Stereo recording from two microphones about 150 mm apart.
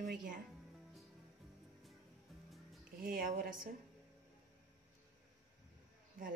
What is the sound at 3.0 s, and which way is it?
Speech, 85° right.